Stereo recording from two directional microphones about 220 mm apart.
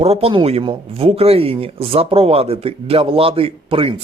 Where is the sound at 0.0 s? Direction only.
25° right (ahead or behind).